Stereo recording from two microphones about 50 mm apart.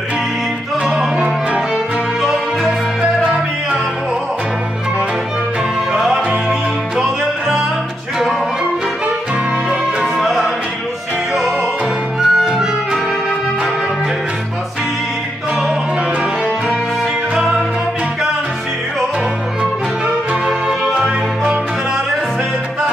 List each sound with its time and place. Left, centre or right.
0.8 s music: centre
3.0 s music: right
5.9 s music: centre
9.7 s music: centre
12.2 s music: centre
20.4 s music: centre